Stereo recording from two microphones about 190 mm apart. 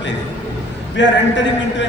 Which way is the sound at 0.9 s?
70° left (ahead or behind).